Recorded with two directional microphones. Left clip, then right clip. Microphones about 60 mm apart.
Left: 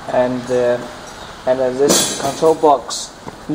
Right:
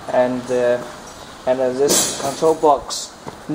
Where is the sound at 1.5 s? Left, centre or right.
Centre.